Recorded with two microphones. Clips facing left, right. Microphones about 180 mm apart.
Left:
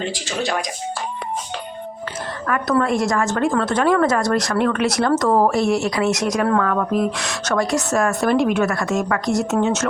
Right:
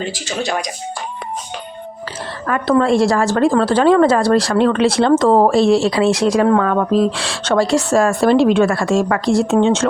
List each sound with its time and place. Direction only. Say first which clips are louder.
0.0 s speech: right 2 dB; centre (ahead or behind)
2.5 s a woman's voice: right 5 dB; 30° right (ahead or behind)